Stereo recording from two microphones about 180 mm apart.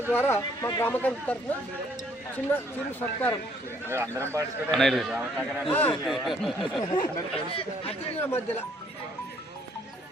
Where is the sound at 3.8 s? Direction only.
15° right (ahead or behind).